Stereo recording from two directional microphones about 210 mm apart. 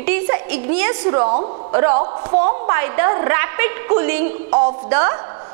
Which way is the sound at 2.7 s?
15° right (ahead or behind).